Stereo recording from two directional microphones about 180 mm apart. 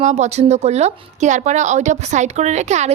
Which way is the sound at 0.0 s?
40° right (ahead or behind).